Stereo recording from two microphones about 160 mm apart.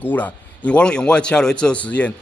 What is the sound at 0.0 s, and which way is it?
A man's voice, 10° left (ahead or behind).